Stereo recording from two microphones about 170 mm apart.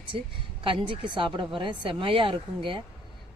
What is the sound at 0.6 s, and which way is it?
Speech, 30° right (ahead or behind).